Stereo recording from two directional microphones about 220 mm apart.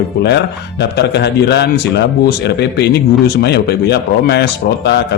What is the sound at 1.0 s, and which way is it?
A man's voice, 50° left (ahead or behind).